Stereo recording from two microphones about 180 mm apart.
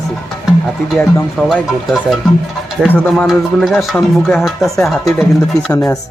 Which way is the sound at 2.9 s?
5° left (ahead or behind).